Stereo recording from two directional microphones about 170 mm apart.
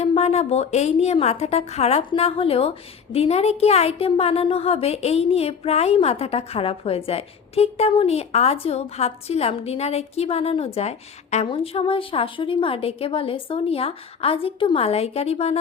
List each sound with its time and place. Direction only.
0.0 s a woman's voice: 40° left (ahead or behind)